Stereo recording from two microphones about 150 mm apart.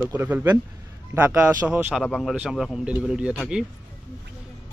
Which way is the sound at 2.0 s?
5° left (ahead or behind).